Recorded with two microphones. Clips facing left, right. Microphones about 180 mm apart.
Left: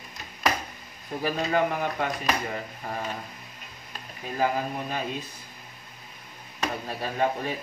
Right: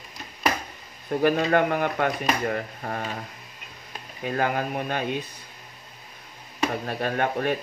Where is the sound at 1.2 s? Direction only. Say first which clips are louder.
Right 4 dB; 60° right (ahead or behind).